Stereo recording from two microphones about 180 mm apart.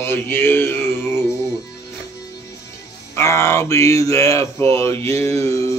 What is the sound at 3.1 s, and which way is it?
Speech, 15° left (ahead or behind).